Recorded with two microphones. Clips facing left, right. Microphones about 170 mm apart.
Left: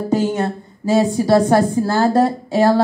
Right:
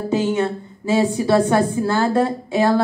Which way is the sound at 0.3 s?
40° left (ahead or behind).